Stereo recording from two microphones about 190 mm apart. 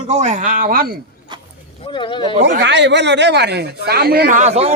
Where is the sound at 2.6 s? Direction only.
65° right (ahead or behind).